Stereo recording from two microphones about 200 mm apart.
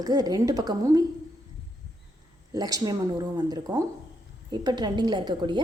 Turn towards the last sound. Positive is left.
turn(degrees=-25)  # may be behind; listen again after turning